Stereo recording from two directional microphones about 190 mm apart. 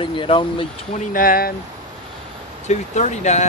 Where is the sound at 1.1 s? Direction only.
50° left (ahead or behind).